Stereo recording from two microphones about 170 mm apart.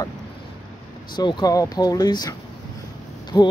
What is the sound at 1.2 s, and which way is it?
Speech, 25° left (ahead or behind).